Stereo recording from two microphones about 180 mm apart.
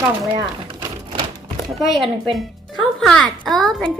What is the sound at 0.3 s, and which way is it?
Typewriter, 20° right (ahead or behind).